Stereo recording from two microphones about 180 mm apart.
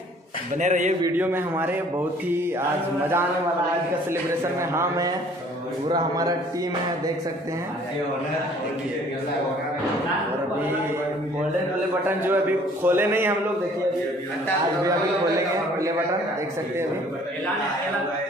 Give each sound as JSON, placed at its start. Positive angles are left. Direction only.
{"t": 0.6, "sound": "a man's voice", "side_deg": -40}
{"t": 1.0, "sound": "a man's voice", "side_deg": -10}
{"t": 4.1, "sound": "a man's voice", "side_deg": -15}
{"t": 12.2, "sound": "a man's voice", "side_deg": -10}